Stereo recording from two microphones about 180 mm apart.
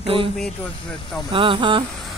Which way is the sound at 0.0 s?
30° right (ahead or behind).